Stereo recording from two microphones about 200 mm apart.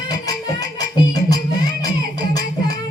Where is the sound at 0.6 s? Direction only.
20° left (ahead or behind).